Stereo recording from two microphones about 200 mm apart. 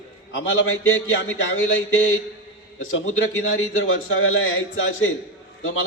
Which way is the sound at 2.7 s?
80° left.